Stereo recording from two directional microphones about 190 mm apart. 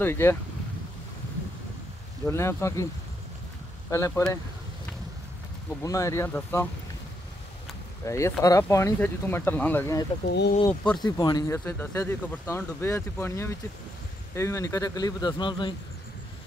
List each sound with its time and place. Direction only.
0.0 s speech: 10° left (ahead or behind)
2.2 s speech: 15° left (ahead or behind)
3.9 s speech: 15° left (ahead or behind)
5.7 s speech: 15° left (ahead or behind)
8.0 s speech: 15° left (ahead or behind)
10.2 s speech: 60° left (ahead or behind)
10.7 s speech: 5° left (ahead or behind)
11.0 s a man's voice: 20° left (ahead or behind)